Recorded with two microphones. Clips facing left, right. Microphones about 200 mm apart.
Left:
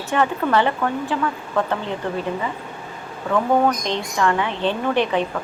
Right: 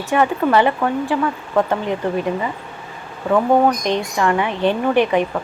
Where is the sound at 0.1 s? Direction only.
10° right (ahead or behind).